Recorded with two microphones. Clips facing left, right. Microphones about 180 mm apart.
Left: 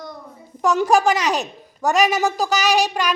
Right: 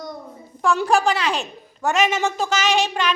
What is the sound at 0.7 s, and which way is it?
Child singing, 45° left (ahead or behind).